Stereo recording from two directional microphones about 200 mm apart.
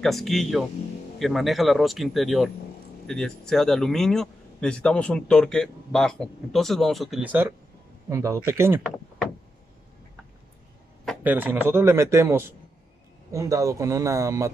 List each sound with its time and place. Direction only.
0.0 s speech: centre (ahead or behind)
11.2 s speech: 10° right (ahead or behind)